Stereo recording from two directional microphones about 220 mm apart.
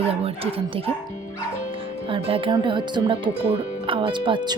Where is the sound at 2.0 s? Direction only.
25° right (ahead or behind).